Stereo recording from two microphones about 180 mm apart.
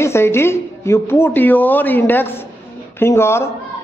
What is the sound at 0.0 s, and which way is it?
A man's voice, 15° left (ahead or behind).